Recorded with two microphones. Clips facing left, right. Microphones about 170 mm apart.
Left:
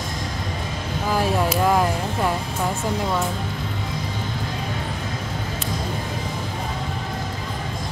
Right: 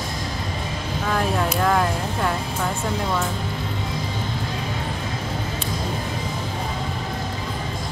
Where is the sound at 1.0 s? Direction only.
5° left (ahead or behind).